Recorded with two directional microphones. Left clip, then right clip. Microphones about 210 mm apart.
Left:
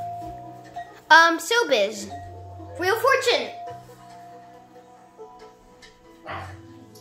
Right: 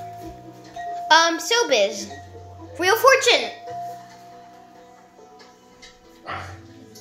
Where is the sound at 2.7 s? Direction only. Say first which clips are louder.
Right 5 dB; 10° right (ahead or behind).